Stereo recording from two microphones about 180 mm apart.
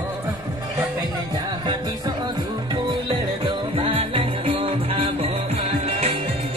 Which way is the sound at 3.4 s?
30° right (ahead or behind).